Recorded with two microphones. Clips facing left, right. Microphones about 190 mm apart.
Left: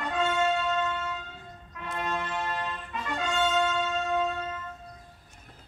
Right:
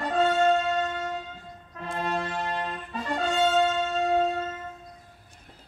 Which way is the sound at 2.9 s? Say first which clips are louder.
Right 5 dB; 35° right (ahead or behind).